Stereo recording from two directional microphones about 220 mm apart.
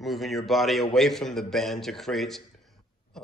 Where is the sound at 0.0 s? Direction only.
Centre (ahead or behind).